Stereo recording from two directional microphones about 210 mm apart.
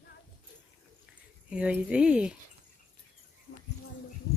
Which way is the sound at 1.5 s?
5° right (ahead or behind).